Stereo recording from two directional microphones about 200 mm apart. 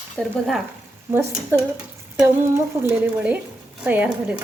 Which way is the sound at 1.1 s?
10° right (ahead or behind).